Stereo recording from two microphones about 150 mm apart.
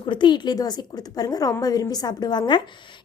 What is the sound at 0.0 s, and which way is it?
A woman's voice, 30° left (ahead or behind).